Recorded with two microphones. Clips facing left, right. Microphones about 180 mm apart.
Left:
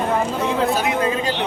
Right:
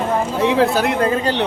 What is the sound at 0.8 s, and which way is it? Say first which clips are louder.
Speech: right 3 dB; 60° right (ahead or behind).